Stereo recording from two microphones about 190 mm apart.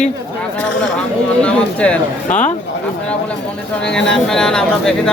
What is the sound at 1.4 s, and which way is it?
Speech, 5° left (ahead or behind).